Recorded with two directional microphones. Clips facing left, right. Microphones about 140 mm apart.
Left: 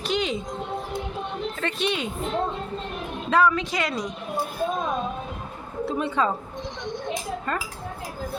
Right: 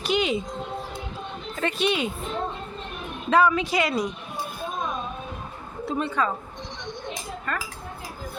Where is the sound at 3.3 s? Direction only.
Centre (ahead or behind).